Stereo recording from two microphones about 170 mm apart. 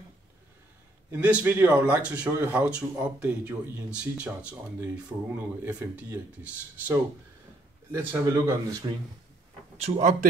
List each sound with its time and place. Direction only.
1.1 s speech: 10° right (ahead or behind)
9.8 s speech: 45° right (ahead or behind)